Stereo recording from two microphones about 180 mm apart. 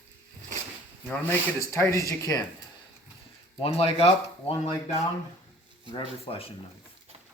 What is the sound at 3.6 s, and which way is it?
Speech, 35° left (ahead or behind).